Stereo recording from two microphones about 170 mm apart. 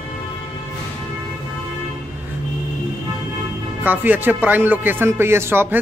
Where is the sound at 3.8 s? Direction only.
10° right (ahead or behind).